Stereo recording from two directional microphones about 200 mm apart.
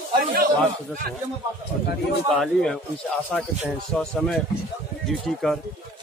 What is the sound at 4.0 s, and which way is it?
Speech, 5° left (ahead or behind).